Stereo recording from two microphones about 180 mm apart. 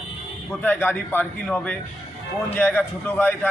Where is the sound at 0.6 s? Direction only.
10° left (ahead or behind).